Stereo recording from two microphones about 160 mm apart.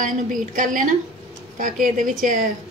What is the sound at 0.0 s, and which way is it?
A woman's voice, 55° right (ahead or behind).